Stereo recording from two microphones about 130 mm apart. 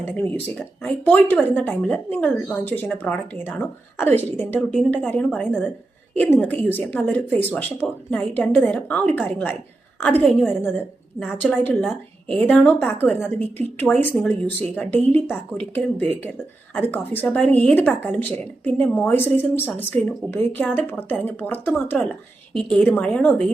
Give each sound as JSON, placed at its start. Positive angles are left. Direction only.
{"t": 0.0, "sound": "speech", "side_deg": 15}
{"t": 11.2, "sound": "speech", "side_deg": 0}
{"t": 22.7, "sound": "speech", "side_deg": 10}